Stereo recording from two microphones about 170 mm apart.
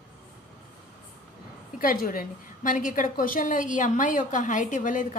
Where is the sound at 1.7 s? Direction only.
55° left (ahead or behind).